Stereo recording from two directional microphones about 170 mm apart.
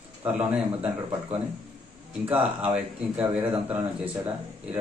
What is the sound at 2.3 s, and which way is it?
A man's voice, 10° right (ahead or behind).